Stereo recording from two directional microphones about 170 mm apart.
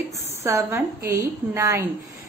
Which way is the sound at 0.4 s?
15° right (ahead or behind).